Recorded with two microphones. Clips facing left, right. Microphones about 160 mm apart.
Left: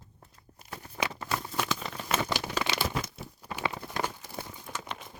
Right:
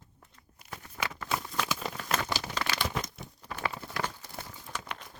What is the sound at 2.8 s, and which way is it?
Crumpling, 5° left (ahead or behind).